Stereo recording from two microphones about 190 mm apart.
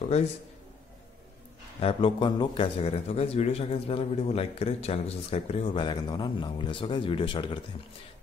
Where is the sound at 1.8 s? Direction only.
30° left (ahead or behind).